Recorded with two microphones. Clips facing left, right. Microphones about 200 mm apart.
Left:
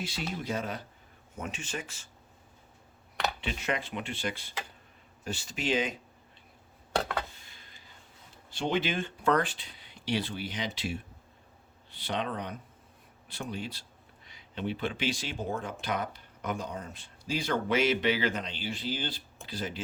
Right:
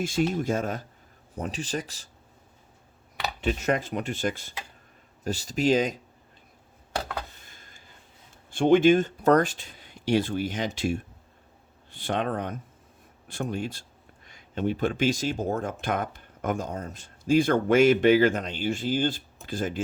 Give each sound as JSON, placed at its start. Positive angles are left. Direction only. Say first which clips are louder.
{"t": 0.0, "sound": "speech", "louder": "right 10 dB", "side_deg": -50}
{"t": 1.4, "sound": "speech", "louder": "right 6 dB", "side_deg": -35}
{"t": 3.4, "sound": "speech", "louder": "right 7 dB", "side_deg": -45}
{"t": 6.9, "sound": "a sound", "louder": "left 1 dB", "side_deg": 0}
{"t": 7.4, "sound": "a sound", "louder": "right 3 dB", "side_deg": -45}
{"t": 8.4, "sound": "speech", "louder": "right 12 dB", "side_deg": -50}